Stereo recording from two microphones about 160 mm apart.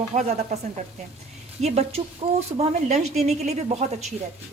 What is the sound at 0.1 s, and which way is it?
Speech, 45° right (ahead or behind).